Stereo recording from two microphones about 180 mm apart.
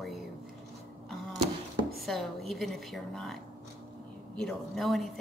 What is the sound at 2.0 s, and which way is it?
A woman's voice, centre (ahead or behind).